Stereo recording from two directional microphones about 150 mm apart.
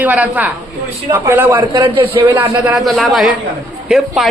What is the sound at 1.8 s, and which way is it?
Speech, 35° right (ahead or behind).